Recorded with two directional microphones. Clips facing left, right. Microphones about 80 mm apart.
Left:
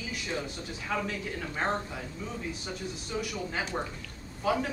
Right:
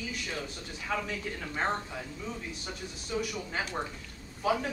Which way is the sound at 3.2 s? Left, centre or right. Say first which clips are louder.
Left 1 dB; centre.